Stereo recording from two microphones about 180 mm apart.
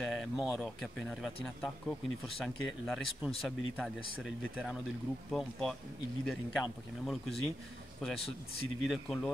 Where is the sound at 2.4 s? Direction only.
Centre (ahead or behind).